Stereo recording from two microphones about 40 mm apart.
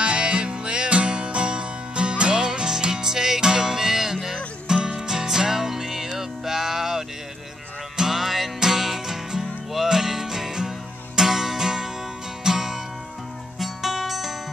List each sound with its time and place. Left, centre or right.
0.0 s music: right; by 14.3 s centre